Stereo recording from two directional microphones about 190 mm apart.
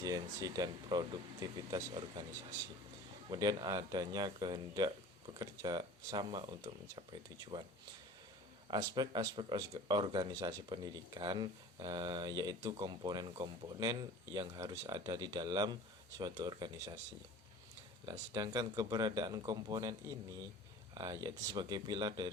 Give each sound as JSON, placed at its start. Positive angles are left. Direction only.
{"t": 0.0, "sound": "speech", "side_deg": -20}
{"t": 3.2, "sound": "speech", "side_deg": -20}
{"t": 8.6, "sound": "speech", "side_deg": -20}
{"t": 18.3, "sound": "speech", "side_deg": -20}